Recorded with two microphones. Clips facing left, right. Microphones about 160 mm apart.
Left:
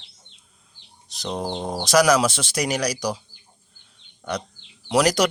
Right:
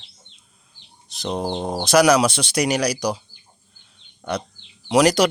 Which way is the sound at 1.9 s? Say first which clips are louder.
Right 2 dB; centre (ahead or behind).